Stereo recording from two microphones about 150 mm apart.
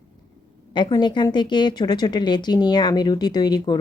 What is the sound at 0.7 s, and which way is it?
Speech, 30° left (ahead or behind).